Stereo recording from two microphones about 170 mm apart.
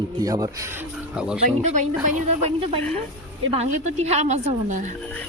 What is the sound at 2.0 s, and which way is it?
A woman's voice, 40° right (ahead or behind).